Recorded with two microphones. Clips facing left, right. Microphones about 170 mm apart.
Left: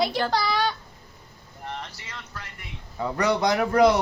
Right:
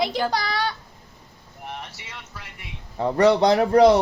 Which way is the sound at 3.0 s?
30° right (ahead or behind).